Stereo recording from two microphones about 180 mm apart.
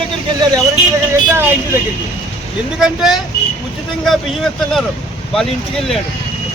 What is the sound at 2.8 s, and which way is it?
Speech, centre (ahead or behind).